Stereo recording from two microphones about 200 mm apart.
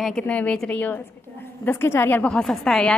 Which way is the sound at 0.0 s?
5° left (ahead or behind).